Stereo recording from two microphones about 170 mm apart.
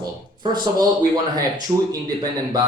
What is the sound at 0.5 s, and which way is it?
Speech, 25° right (ahead or behind).